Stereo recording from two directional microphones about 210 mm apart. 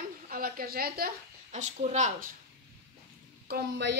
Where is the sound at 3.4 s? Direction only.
50° right (ahead or behind).